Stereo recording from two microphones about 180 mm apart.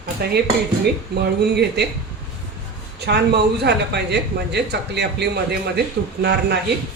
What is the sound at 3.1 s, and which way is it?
Speech, 65° right (ahead or behind).